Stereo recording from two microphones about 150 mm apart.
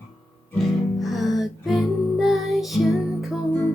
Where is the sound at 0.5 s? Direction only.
Centre (ahead or behind).